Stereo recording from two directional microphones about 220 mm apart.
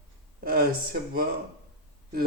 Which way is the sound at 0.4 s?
45° right (ahead or behind).